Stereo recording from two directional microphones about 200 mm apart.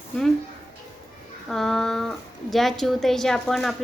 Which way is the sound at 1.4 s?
Centre (ahead or behind).